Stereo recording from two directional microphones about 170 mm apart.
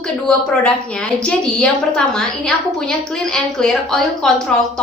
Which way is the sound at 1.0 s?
5° left (ahead or behind).